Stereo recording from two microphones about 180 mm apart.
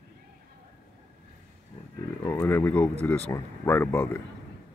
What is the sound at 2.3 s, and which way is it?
Speech, 15° left (ahead or behind).